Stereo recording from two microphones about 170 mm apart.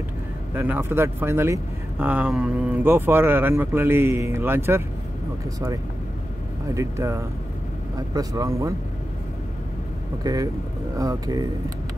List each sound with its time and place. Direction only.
0.6 s speech: 10° right (ahead or behind)
6.7 s speech: 20° right (ahead or behind)
10.2 s speech: 20° right (ahead or behind)